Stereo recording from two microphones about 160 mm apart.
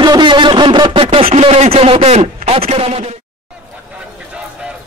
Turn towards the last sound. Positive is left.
turn(degrees=-40)  # may be behind; listen again after turning